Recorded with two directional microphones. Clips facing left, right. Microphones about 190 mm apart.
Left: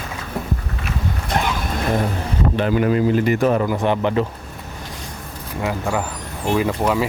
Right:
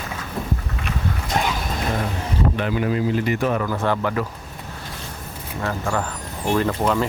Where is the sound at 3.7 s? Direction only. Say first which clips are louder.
Left 3 dB; 20° left (ahead or behind).